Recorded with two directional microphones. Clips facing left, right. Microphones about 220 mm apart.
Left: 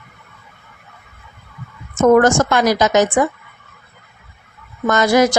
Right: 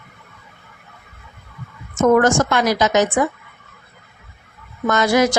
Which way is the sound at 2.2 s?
45° left (ahead or behind).